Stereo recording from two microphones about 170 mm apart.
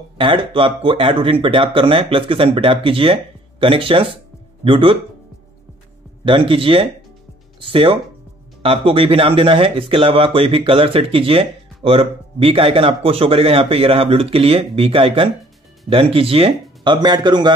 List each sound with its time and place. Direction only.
0.2 s speech: 30° right (ahead or behind)
6.2 s speech: 30° right (ahead or behind)